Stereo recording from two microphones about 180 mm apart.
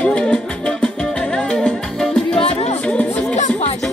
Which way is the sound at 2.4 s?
35° left (ahead or behind).